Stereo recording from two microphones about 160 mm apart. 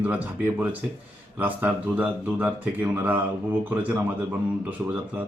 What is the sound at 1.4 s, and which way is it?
A man's voice, 10° right (ahead or behind).